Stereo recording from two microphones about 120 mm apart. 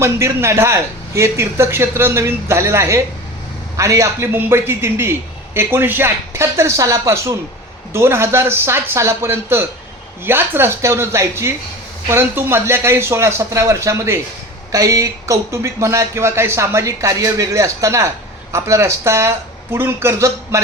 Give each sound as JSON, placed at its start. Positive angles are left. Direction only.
{"t": 0.0, "sound": "speech", "side_deg": -20}